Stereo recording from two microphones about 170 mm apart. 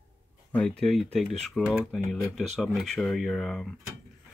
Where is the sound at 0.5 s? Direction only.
5° left (ahead or behind).